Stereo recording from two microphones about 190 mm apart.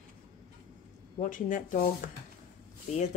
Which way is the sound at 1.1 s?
45° left (ahead or behind).